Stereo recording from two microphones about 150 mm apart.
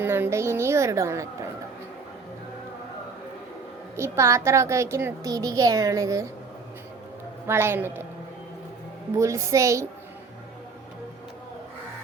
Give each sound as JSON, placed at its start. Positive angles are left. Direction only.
{"t": 0.0, "sound": "a woman's voice", "side_deg": -15}
{"t": 3.9, "sound": "a child's voice", "side_deg": -20}
{"t": 7.4, "sound": "a woman's voice", "side_deg": -15}
{"t": 9.1, "sound": "a child's voice", "side_deg": -20}